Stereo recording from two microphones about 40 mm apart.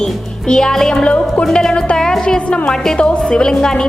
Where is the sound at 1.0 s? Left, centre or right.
Left.